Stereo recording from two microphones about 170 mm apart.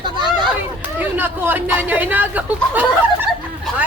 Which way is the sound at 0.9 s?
10° right (ahead or behind).